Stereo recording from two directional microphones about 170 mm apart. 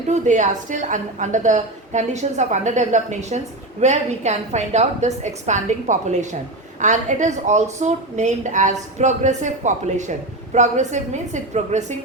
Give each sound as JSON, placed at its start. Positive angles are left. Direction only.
{"t": 0.1, "sound": "a woman's voice", "side_deg": -45}